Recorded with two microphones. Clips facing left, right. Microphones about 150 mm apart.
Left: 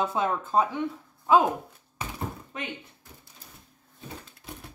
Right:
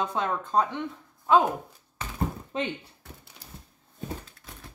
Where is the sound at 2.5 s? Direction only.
25° right (ahead or behind).